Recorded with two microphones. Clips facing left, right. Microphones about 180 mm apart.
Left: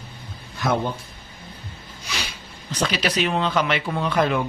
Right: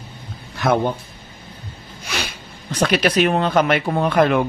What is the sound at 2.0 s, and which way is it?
Speech, 55° right (ahead or behind).